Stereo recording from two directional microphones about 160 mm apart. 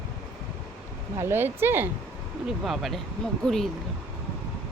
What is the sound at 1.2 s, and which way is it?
Speech, 15° right (ahead or behind).